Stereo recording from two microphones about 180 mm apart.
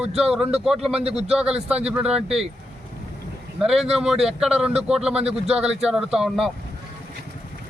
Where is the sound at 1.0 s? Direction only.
35° right (ahead or behind).